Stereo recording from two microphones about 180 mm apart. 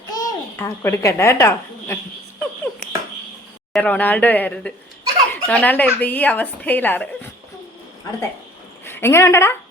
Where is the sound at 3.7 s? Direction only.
10° left (ahead or behind).